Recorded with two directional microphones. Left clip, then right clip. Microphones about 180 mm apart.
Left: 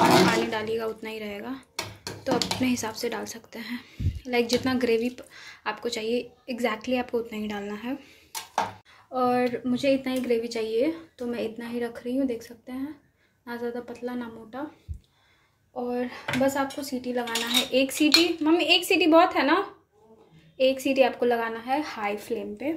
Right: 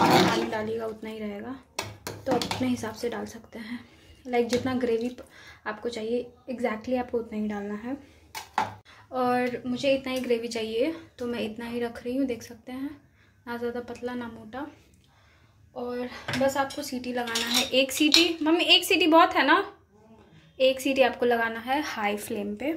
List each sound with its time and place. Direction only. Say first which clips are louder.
0.1 s speech: left 1 dB; centre (ahead or behind)
8.6 s a sound: left 2 dB; centre (ahead or behind)
9.7 s a woman's voice: left 1 dB; 20° left (ahead or behind)
15.7 s a woman's voice: left 3 dB; 20° left (ahead or behind); by 22.8 s centre (ahead or behind)